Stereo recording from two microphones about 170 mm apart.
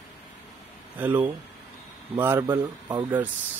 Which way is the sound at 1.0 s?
10° right (ahead or behind).